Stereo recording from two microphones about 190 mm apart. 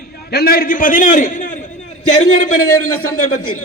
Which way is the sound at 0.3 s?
55° left (ahead or behind).